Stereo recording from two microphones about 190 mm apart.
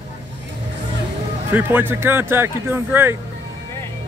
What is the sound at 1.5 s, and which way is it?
Speech, 10° right (ahead or behind).